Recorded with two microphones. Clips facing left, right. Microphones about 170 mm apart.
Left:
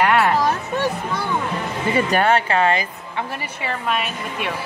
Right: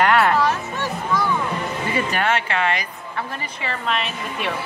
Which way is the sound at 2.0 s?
35° left (ahead or behind).